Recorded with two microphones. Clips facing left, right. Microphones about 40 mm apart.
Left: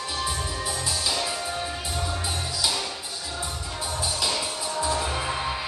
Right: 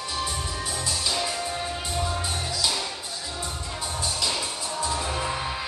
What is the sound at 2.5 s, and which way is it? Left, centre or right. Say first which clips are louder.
Music: even; centre.